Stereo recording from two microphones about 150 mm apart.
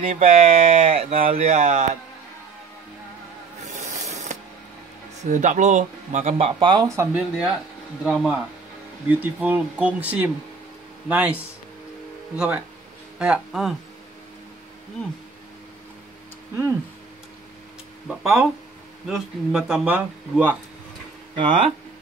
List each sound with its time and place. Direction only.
0.0 s speech: 40° right (ahead or behind)
3.6 s a sound: 50° right (ahead or behind)
5.2 s speech: 55° right (ahead or behind)
6.3 s speech: 35° right (ahead or behind)
7.2 s speech: 5° right (ahead or behind)
18.0 s speech: 5° right (ahead or behind)
21.4 s speech: 35° right (ahead or behind)